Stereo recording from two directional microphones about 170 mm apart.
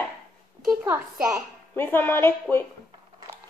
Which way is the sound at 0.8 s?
10° right (ahead or behind).